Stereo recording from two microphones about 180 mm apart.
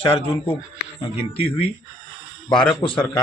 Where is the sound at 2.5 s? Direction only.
25° left (ahead or behind).